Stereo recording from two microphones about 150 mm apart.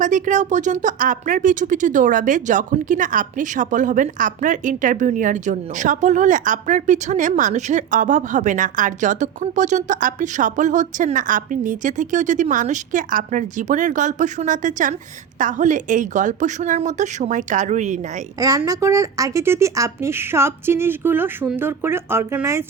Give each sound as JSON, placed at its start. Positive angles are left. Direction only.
{"t": 0.0, "sound": "speech", "side_deg": -55}
{"t": 18.3, "sound": "speech", "side_deg": -25}